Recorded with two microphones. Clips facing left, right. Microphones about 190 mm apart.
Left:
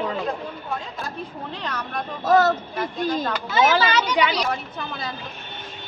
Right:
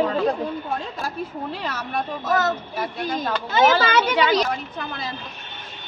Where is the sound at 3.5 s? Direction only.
55° right (ahead or behind).